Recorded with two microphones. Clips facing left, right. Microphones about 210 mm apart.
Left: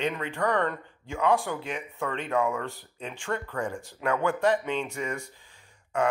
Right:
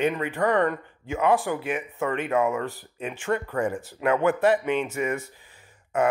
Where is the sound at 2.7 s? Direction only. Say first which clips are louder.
Right 5 dB; 5° right (ahead or behind).